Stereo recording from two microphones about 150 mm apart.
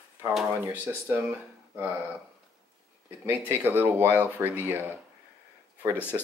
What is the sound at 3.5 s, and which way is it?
Speech, 15° right (ahead or behind).